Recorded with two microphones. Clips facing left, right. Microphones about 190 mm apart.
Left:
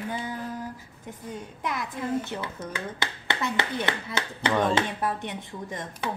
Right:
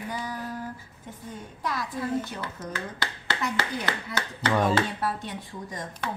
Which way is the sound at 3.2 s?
25° left (ahead or behind).